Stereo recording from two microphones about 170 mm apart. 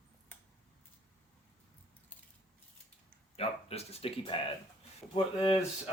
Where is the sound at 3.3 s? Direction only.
35° left (ahead or behind).